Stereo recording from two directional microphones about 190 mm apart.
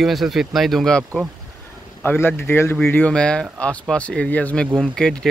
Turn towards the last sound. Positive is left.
turn(degrees=5)  # may be behind; listen again after turning